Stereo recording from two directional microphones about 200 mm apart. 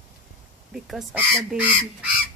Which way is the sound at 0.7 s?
Centre (ahead or behind).